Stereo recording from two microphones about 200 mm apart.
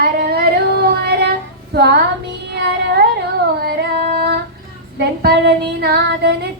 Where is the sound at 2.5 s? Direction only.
55° right (ahead or behind).